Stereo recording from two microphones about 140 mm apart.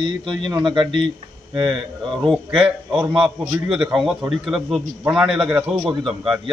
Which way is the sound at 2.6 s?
5° right (ahead or behind).